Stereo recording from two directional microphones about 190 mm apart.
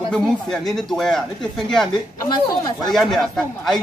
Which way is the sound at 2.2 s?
20° left (ahead or behind).